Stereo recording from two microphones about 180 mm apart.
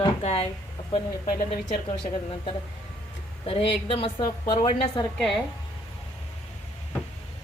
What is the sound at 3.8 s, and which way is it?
A woman's voice, 30° left (ahead or behind).